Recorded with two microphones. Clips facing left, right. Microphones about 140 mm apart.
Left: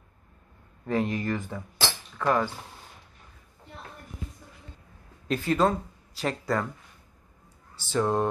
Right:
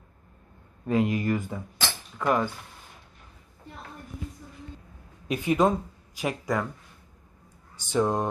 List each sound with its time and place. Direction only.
0.8 s speech: 15° right (ahead or behind)
2.1 s cutlery: 15° right (ahead or behind)
5.3 s speech: 15° right (ahead or behind)
7.7 s speech: 15° right (ahead or behind)